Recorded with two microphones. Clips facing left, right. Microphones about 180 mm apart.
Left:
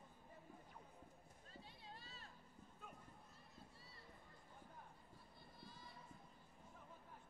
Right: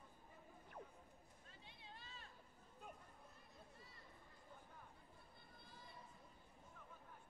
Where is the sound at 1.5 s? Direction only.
40° left (ahead or behind).